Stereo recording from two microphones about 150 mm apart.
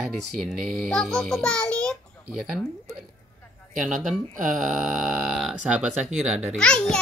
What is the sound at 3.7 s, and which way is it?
Speech, 60° right (ahead or behind).